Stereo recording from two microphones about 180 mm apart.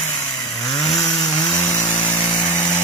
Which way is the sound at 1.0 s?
20° left (ahead or behind).